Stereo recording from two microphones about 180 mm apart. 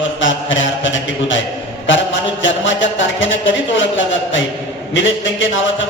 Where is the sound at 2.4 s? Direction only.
90° left.